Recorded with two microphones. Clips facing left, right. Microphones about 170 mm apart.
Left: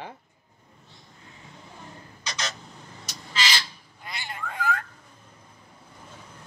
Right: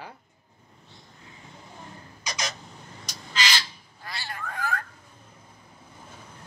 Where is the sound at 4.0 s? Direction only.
20° left (ahead or behind).